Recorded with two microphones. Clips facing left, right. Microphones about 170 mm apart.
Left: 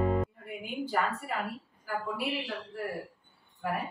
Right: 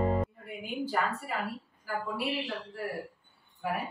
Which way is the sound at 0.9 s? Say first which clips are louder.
Left 1 dB; centre (ahead or behind).